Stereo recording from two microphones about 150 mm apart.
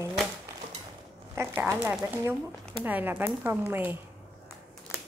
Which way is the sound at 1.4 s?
20° right (ahead or behind).